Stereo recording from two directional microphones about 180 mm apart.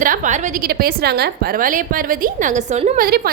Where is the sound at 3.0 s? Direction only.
55° right (ahead or behind).